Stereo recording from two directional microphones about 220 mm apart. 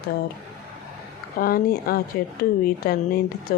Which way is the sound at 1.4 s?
40° left (ahead or behind).